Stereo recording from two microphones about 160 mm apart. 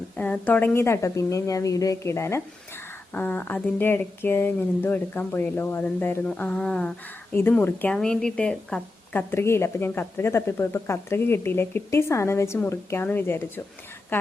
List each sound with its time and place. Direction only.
0.2 s a woman's voice: 10° left (ahead or behind)